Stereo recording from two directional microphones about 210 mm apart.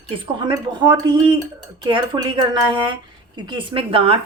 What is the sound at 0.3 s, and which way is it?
Speech, 20° right (ahead or behind).